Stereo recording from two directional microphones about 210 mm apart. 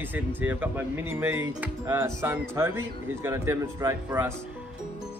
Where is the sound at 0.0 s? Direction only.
10° right (ahead or behind).